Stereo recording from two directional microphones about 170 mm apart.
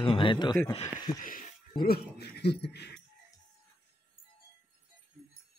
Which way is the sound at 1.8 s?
65° left (ahead or behind).